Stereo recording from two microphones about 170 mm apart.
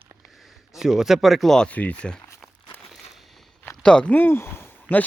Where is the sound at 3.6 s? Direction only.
5° left (ahead or behind).